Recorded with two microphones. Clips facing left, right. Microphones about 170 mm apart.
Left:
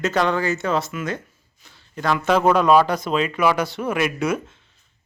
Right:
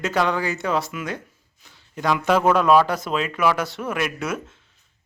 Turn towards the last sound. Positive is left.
turn(degrees=0)  # may be behind; listen again after turning